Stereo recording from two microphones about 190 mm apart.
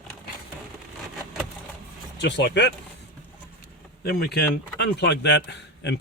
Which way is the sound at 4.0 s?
55° left (ahead or behind).